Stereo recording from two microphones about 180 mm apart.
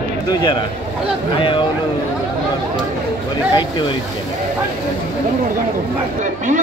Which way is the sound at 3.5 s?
25° left (ahead or behind).